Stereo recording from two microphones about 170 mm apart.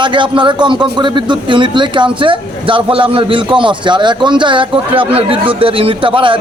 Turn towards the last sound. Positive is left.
turn(degrees=-30)  # may be behind; listen again after turning